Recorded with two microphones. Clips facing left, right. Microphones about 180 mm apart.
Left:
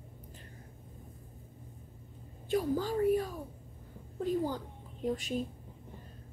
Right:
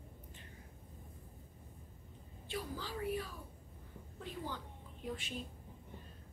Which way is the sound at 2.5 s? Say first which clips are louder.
Left 12 dB; 45° left (ahead or behind).